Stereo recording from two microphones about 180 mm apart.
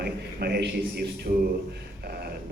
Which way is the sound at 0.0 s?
60° right (ahead or behind).